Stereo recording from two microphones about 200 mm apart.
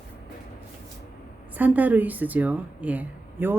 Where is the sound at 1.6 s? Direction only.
10° right (ahead or behind).